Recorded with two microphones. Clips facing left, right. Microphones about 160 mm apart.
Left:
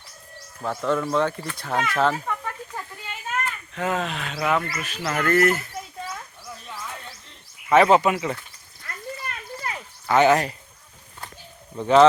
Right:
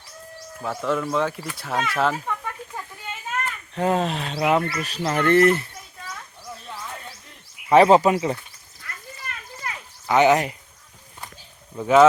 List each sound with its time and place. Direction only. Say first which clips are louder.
0.6 s speech: left 1 dB; centre (ahead or behind)
3.8 s speech: right 4 dB; 35° right (ahead or behind)
6.7 s music: even; 5° right (ahead or behind)
7.7 s speech: right 2 dB; 35° right (ahead or behind)
10.1 s speech: right 1 dB; 15° right (ahead or behind)
11.8 s speech: even; 5° right (ahead or behind)